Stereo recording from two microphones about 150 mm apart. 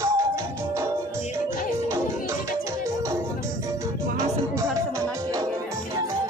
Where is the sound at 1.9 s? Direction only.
20° right (ahead or behind).